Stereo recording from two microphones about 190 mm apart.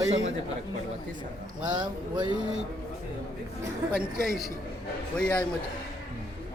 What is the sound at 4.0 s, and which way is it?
A man's voice, centre (ahead or behind).